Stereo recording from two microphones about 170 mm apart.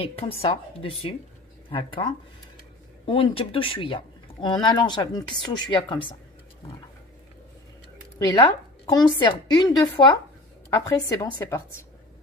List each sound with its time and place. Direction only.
0.0 s a woman's voice: 35° left (ahead or behind)
8.8 s speech: 25° left (ahead or behind)